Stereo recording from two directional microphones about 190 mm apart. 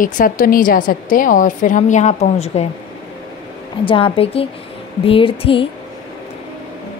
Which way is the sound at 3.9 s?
30° left (ahead or behind).